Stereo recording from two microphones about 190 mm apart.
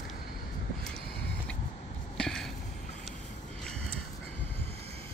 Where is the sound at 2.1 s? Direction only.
5° left (ahead or behind).